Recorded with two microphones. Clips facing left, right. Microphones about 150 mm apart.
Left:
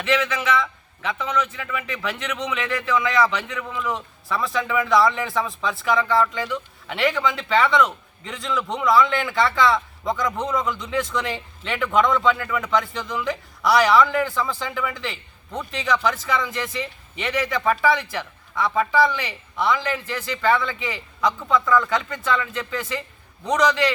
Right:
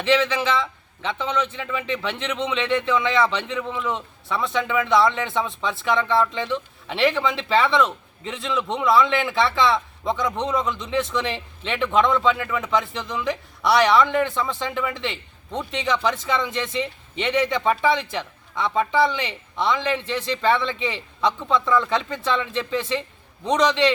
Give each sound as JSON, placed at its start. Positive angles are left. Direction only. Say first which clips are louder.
{"t": 0.0, "sound": "speech", "louder": "right 3 dB", "side_deg": -30}
{"t": 3.9, "sound": "speech", "louder": "even", "side_deg": 0}
{"t": 6.1, "sound": "speech", "louder": "even", "side_deg": -25}
{"t": 8.3, "sound": "speech", "louder": "right 1 dB", "side_deg": 0}
{"t": 14.4, "sound": "speech", "louder": "right 1 dB", "side_deg": -25}